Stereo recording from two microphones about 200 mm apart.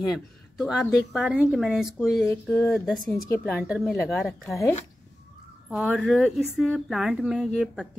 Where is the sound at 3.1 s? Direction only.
10° left (ahead or behind).